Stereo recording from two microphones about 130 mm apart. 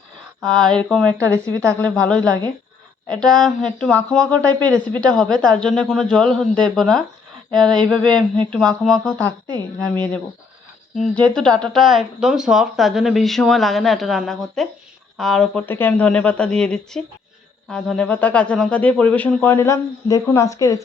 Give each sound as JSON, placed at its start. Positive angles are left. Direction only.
{"t": 0.4, "sound": "speech", "side_deg": 5}
{"t": 1.2, "sound": "a woman's voice", "side_deg": -20}
{"t": 1.8, "sound": "speech", "side_deg": 10}
{"t": 10.9, "sound": "speech", "side_deg": 5}
{"t": 15.6, "sound": "speech", "side_deg": 15}